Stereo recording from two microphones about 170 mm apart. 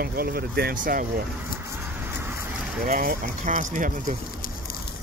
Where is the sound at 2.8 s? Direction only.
55° right (ahead or behind).